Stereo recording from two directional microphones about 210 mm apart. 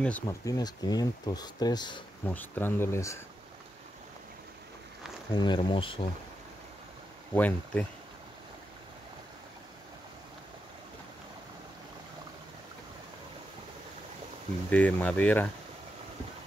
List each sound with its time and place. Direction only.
0.0 s speech: 10° left (ahead or behind)
2.2 s speech: 10° left (ahead or behind)
5.3 s speech: 20° left (ahead or behind)
7.3 s speech: 5° left (ahead or behind)
14.7 s speech: 5° left (ahead or behind)